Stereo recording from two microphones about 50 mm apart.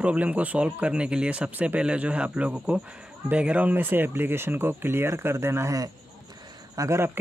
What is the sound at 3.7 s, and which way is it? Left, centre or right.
Speech, right.